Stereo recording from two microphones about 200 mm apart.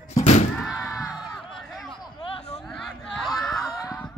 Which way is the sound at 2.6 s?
Centre (ahead or behind).